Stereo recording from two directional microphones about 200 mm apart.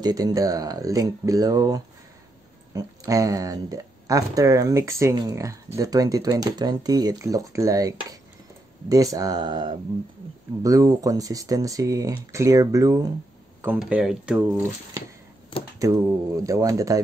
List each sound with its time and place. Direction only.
0.0 s speech: 20° right (ahead or behind)
13.7 s speech: 5° right (ahead or behind)
15.8 s speech: 15° right (ahead or behind)